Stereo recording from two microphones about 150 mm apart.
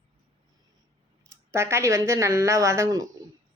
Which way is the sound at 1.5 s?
15° right (ahead or behind).